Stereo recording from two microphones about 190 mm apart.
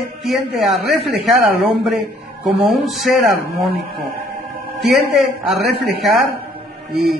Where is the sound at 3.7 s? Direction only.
55° right (ahead or behind).